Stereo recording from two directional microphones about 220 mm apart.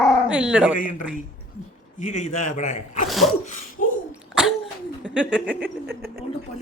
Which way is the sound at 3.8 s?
40° left (ahead or behind).